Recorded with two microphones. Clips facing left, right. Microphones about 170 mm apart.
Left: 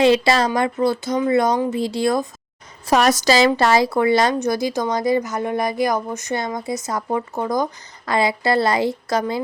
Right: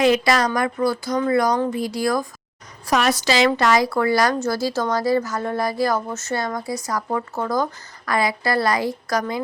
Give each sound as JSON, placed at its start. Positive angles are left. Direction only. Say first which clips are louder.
{"t": 0.0, "sound": "a woman's voice", "louder": "left 2 dB", "side_deg": 30}
{"t": 3.0, "sound": "a woman's voice", "louder": "left 3 dB", "side_deg": 40}